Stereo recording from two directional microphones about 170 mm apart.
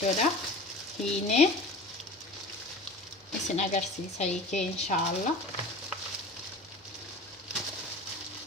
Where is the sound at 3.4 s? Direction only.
45° left (ahead or behind).